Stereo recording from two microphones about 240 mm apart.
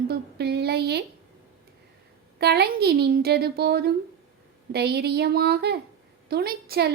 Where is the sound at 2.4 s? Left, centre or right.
Right.